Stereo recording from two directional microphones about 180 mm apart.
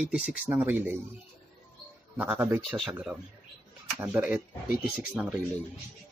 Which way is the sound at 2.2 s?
10° right (ahead or behind).